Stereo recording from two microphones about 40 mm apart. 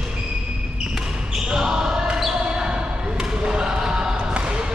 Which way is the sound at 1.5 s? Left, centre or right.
Centre.